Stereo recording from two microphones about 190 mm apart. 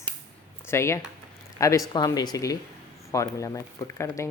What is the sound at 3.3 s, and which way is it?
Speech, 15° left (ahead or behind).